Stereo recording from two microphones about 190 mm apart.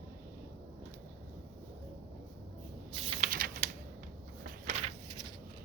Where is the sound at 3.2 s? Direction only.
50° right (ahead or behind).